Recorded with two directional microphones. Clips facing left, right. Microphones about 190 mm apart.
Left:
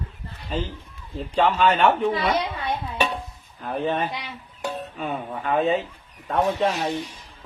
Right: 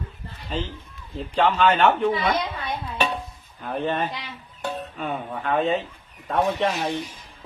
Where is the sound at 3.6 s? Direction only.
Centre (ahead or behind).